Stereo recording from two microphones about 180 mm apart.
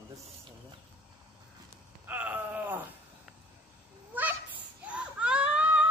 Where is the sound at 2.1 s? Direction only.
10° right (ahead or behind).